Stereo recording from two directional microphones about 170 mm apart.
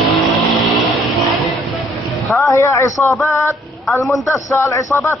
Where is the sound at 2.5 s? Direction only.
15° left (ahead or behind).